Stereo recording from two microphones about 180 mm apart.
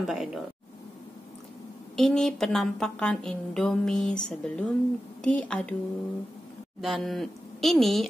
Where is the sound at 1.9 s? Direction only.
5° left (ahead or behind).